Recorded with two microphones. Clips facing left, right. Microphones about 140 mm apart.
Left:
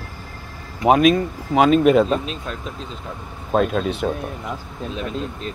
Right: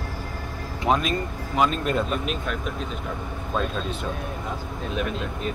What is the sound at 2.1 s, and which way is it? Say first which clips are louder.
Speech: left 2 dB; 30° left (ahead or behind).